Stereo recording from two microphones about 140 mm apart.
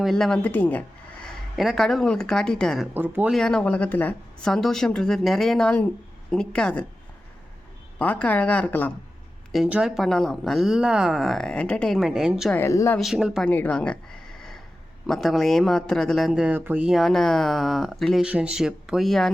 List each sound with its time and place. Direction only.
0.0 s speech: 5° left (ahead or behind)
1.5 s speech: centre (ahead or behind)
2.9 s speech: 15° right (ahead or behind)
3.3 s speech: 5° left (ahead or behind)
7.9 s a woman's voice: 10° left (ahead or behind)
9.5 s speech: 5° right (ahead or behind)
12.5 s speech: 20° left (ahead or behind)
13.0 s speech: centre (ahead or behind)
13.5 s a sound: 10° left (ahead or behind)
15.0 s speech: centre (ahead or behind)